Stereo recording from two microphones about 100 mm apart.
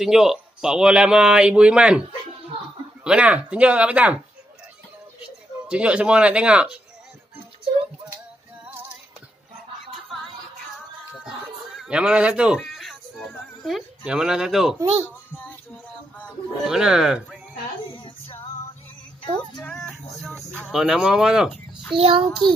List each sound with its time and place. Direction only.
0.0 s speech: 5° right (ahead or behind)
5.7 s speech: 10° right (ahead or behind)
11.1 s a sound: 5° right (ahead or behind)
12.5 s music: centre (ahead or behind)
16.6 s speech: 5° right (ahead or behind)
18.0 s music: 65° left (ahead or behind)
19.7 s speech: 5° left (ahead or behind)
21.9 s child singing: 65° right (ahead or behind)